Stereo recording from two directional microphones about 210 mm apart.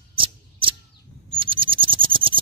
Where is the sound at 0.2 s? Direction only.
25° right (ahead or behind).